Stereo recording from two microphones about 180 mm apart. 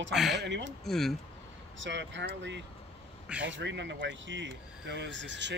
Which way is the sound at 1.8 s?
80° right.